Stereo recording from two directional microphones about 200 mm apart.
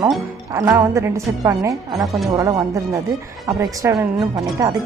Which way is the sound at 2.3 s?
15° right (ahead or behind).